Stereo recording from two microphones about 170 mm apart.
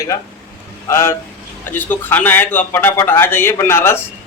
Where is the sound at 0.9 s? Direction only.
15° left (ahead or behind).